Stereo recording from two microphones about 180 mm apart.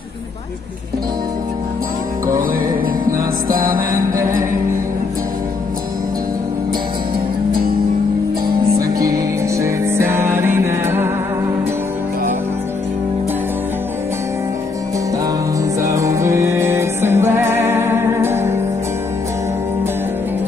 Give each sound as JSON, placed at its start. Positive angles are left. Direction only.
{"t": 2.8, "sound": "music", "side_deg": -50}
{"t": 8.9, "sound": "music", "side_deg": -20}
{"t": 15.8, "sound": "music", "side_deg": -15}